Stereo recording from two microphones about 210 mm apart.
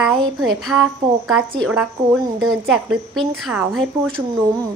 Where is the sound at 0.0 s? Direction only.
Centre (ahead or behind).